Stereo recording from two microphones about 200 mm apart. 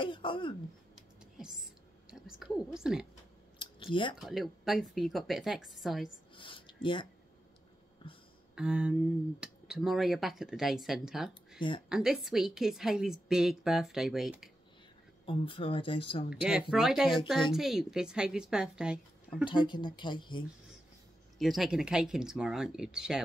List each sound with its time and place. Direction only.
0.0 s speech: 25° left (ahead or behind)
1.4 s whispering: 5° right (ahead or behind)
3.5 s a sound: 25° left (ahead or behind)
4.2 s speech: centre (ahead or behind)
6.3 s a sound: 25° left (ahead or behind)
8.5 s speech: 5° right (ahead or behind)
15.2 s speech: 25° left (ahead or behind)
16.7 s speech: 5° right (ahead or behind)
19.4 s speech: 25° left (ahead or behind)
21.4 s speech: centre (ahead or behind)